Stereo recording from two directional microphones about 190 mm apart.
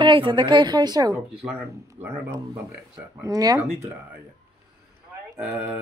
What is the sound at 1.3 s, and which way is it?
Speech, 5° right (ahead or behind).